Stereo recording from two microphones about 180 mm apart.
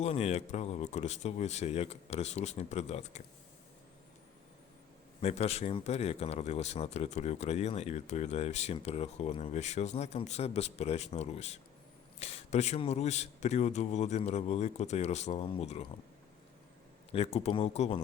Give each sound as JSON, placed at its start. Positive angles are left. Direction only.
{"t": 0.0, "sound": "speech", "side_deg": 35}
{"t": 5.2, "sound": "speech", "side_deg": 35}
{"t": 17.1, "sound": "speech", "side_deg": 35}